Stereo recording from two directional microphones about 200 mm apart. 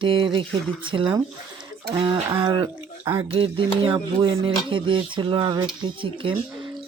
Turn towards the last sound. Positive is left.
turn(degrees=-25)  # may be behind; listen again after turning